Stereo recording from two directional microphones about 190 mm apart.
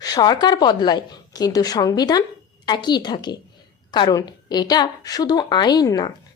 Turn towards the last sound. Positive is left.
turn(degrees=20)  # may be behind; listen again after turning